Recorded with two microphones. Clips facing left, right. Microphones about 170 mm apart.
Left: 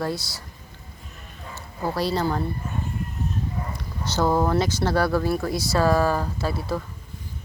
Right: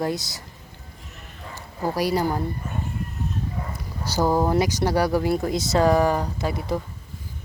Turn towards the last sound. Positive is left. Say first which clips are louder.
# right 1 dB
turn(degrees=-20)  # may be behind; listen again after turning